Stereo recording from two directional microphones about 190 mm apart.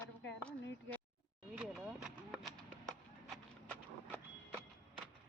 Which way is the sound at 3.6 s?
10° left (ahead or behind).